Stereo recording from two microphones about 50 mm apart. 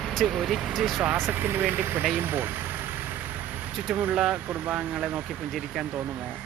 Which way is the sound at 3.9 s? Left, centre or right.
Centre.